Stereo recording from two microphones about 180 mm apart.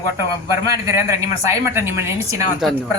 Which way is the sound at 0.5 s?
15° right (ahead or behind).